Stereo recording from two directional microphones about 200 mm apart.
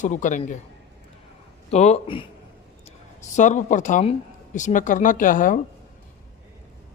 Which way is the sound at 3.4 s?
40° left (ahead or behind).